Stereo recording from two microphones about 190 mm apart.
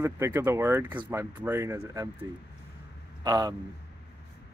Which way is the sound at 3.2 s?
20° right (ahead or behind).